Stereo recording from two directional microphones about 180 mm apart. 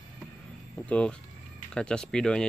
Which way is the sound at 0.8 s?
5° left (ahead or behind).